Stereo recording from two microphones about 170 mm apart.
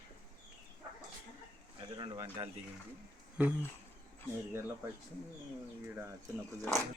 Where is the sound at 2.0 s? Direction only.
20° right (ahead or behind).